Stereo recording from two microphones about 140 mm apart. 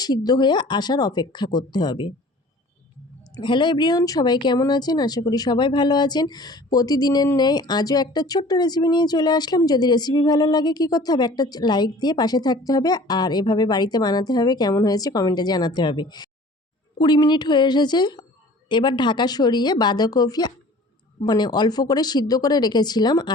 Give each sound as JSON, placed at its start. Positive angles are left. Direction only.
{"t": 0.3, "sound": "speech", "side_deg": 30}
{"t": 3.3, "sound": "speech", "side_deg": 35}